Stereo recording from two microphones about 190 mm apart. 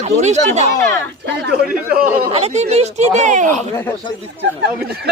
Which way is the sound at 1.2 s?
60° right (ahead or behind).